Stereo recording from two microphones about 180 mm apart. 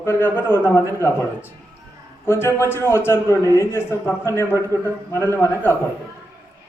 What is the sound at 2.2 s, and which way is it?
A man's voice, 15° left (ahead or behind).